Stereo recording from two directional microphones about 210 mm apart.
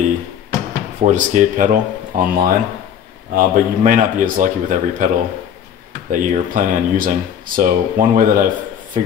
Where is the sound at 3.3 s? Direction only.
45° right (ahead or behind).